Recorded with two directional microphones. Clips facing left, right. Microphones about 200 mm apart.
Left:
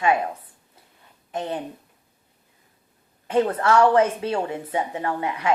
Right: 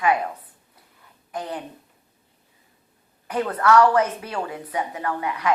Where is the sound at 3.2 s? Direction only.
25° left (ahead or behind).